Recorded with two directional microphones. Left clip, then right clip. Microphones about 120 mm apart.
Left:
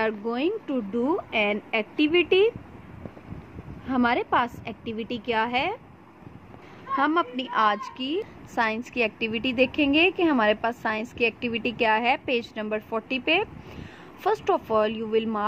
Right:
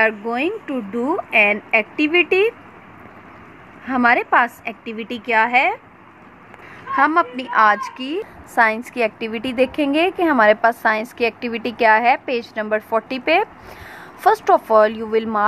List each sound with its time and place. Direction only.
0.0 s a woman's voice: 10° left (ahead or behind)
3.8 s a woman's voice: 15° left (ahead or behind)
7.0 s a woman's voice: 10° left (ahead or behind)
12.6 s a woman's voice: 10° left (ahead or behind)